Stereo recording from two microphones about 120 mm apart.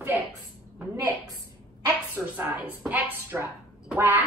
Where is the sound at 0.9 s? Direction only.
30° right (ahead or behind).